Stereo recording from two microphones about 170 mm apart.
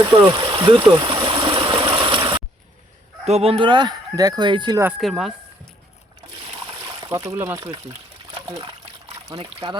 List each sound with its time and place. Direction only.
0.0 s stream: 30° right (ahead or behind)
3.2 s speech: 35° right (ahead or behind)
4.8 s speech: 5° right (ahead or behind)
7.1 s speech: 15° right (ahead or behind)